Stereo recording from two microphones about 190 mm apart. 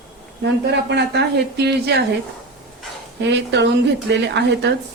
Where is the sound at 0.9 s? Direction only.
60° right (ahead or behind).